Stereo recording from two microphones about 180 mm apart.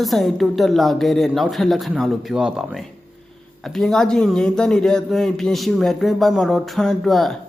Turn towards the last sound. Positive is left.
turn(degrees=0)  # may be behind; listen again after turning